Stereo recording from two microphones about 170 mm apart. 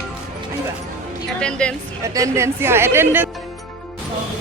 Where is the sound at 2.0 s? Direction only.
20° right (ahead or behind).